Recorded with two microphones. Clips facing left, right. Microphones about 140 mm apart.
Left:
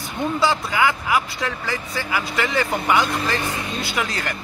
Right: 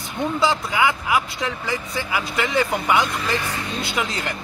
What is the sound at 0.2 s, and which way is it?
Speech, 20° right (ahead or behind).